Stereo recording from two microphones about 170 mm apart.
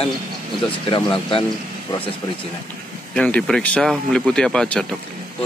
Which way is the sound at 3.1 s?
5° left (ahead or behind).